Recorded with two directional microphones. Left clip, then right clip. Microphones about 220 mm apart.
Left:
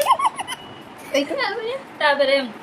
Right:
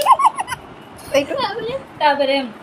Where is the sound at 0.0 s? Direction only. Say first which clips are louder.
Right 5 dB; 10° right (ahead or behind).